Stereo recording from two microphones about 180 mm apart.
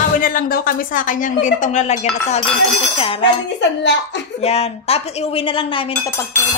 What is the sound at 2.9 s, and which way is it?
Dishes, 30° left (ahead or behind).